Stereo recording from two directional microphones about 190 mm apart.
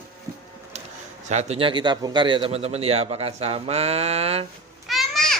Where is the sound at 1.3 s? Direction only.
35° right (ahead or behind).